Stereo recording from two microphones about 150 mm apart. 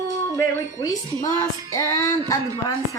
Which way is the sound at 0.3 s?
25° left (ahead or behind).